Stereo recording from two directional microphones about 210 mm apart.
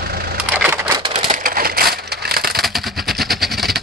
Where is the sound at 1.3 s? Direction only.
45° right (ahead or behind).